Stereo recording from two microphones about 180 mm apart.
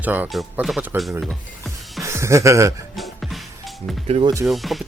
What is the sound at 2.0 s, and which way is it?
Speech, 15° right (ahead or behind).